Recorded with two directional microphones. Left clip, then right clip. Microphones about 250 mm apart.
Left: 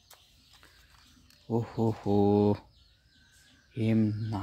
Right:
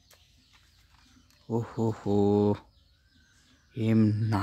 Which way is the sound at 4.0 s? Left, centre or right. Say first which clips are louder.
Right 4 dB; right.